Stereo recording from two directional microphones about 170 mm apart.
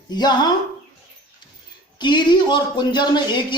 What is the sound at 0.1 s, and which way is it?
Speech, 25° left (ahead or behind).